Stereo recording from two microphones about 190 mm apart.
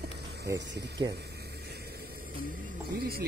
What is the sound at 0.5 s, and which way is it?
Speech, 65° right (ahead or behind).